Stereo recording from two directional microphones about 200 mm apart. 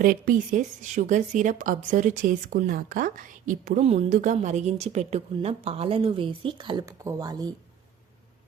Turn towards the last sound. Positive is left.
turn(degrees=-20)  # may be behind; listen again after turning